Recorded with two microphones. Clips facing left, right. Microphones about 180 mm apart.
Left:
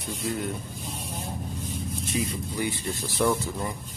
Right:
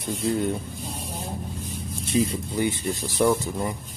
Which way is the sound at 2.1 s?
25° right (ahead or behind).